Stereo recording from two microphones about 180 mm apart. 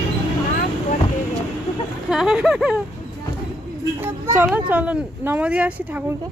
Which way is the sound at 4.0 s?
15° right (ahead or behind).